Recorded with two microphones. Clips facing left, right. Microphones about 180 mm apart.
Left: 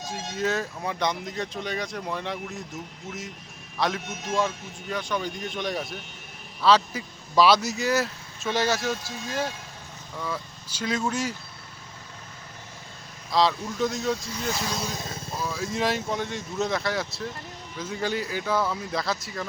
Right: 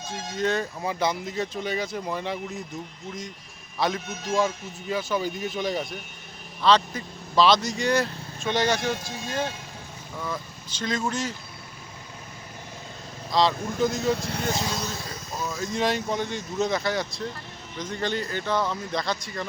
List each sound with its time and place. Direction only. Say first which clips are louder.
0.0 s a man's voice: right 1 dB; 5° left (ahead or behind)
13.3 s a man's voice: even; centre (ahead or behind)
14.2 s speech: right 4 dB; 60° right (ahead or behind)
14.8 s speech: left 1 dB; 20° left (ahead or behind)
15.4 s a man's voice: right 1 dB; 5° left (ahead or behind)